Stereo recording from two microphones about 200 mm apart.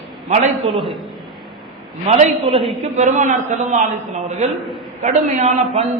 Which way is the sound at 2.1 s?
35° right (ahead or behind).